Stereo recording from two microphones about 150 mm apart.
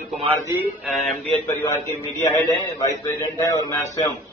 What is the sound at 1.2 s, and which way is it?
Speech, 20° left (ahead or behind).